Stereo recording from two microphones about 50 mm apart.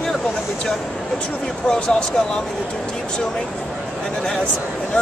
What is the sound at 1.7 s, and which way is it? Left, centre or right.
Speech, centre.